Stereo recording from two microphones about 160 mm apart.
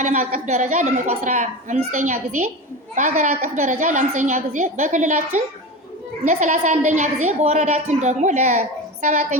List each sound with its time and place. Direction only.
0.0 s a woman's voice: 50° right (ahead or behind)